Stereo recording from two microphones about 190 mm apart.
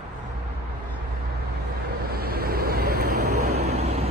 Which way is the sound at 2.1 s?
55° right (ahead or behind).